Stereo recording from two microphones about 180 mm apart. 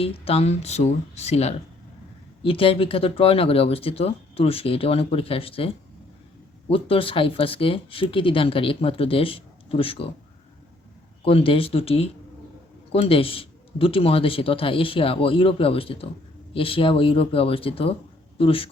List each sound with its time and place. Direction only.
0.0 s speech: 30° left (ahead or behind)
11.3 s speech: 30° left (ahead or behind)